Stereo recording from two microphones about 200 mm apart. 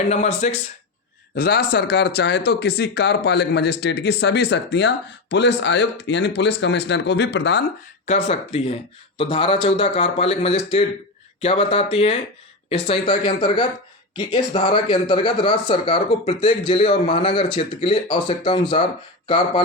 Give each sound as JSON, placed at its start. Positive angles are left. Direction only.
{"t": 0.4, "sound": "speech", "side_deg": 35}
{"t": 1.4, "sound": "speech", "side_deg": 50}
{"t": 8.0, "sound": "speech", "side_deg": 35}